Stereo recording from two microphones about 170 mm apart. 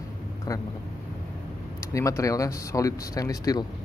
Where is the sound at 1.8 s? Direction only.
20° left (ahead or behind).